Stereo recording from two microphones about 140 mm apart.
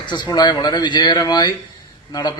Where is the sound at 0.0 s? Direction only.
30° left (ahead or behind).